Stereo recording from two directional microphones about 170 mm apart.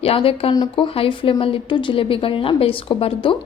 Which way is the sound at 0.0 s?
35° left (ahead or behind).